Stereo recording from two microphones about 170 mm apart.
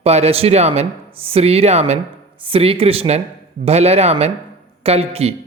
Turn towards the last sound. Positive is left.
turn(degrees=-35)  # may be behind; listen again after turning